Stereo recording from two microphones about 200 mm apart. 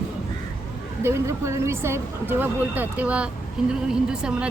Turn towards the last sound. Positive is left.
turn(degrees=-5)  # may be behind; listen again after turning